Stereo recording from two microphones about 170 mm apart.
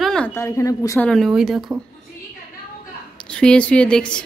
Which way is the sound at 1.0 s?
Centre (ahead or behind).